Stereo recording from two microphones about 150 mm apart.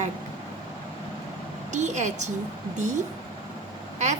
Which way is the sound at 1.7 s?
50° right (ahead or behind).